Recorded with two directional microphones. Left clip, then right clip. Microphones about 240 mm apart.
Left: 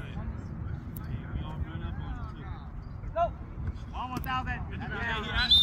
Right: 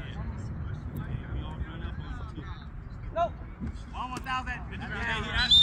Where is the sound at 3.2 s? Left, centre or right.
Centre.